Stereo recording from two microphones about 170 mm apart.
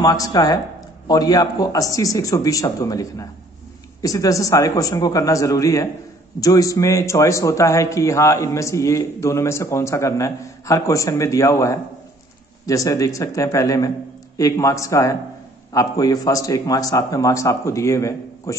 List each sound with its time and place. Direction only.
0.0 s a man's voice: 20° left (ahead or behind)